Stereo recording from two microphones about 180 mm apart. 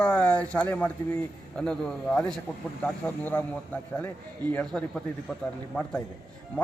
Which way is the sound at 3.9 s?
10° left (ahead or behind).